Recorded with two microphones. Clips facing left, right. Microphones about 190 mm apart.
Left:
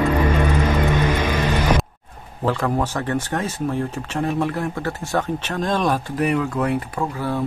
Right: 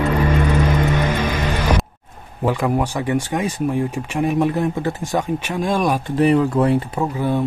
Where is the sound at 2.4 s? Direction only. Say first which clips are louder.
Right 2 dB; 15° right (ahead or behind).